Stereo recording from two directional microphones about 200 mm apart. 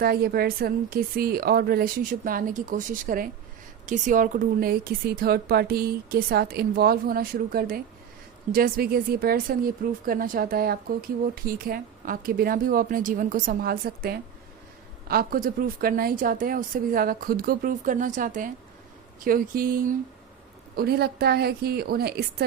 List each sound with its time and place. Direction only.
0.0 s speech: 50° right (ahead or behind)